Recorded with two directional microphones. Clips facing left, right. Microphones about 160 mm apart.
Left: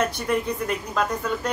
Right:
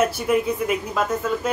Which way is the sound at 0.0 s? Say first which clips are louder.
Right 4 dB; 5° right (ahead or behind).